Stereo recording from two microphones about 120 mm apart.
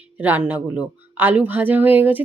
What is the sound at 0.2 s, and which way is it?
Speech, 15° right (ahead or behind).